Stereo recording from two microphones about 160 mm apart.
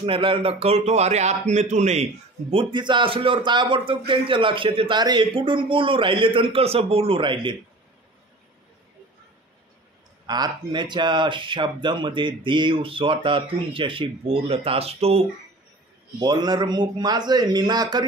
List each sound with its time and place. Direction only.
0.0 s a man's voice: 35° right (ahead or behind)
2.5 s a man's voice: 30° right (ahead or behind)
10.2 s a man's voice: 25° right (ahead or behind)
16.2 s speech: 25° right (ahead or behind)